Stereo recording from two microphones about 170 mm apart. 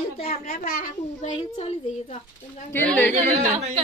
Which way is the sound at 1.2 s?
40° left (ahead or behind).